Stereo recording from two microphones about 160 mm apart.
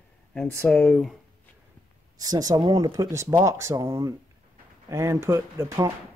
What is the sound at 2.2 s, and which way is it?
Speech, 25° right (ahead or behind).